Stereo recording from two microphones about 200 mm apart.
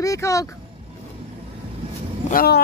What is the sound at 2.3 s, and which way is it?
Speech, 50° left (ahead or behind).